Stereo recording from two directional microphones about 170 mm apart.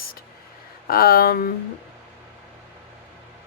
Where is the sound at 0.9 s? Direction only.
60° left (ahead or behind).